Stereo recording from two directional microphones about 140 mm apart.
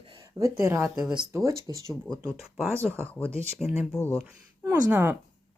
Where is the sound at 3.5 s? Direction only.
Centre (ahead or behind).